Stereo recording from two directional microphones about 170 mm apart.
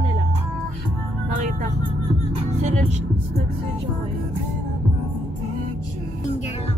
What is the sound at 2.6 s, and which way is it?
Speech, 45° right (ahead or behind).